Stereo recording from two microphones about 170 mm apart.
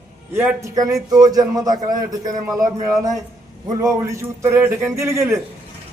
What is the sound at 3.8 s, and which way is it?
A man's voice, 15° right (ahead or behind).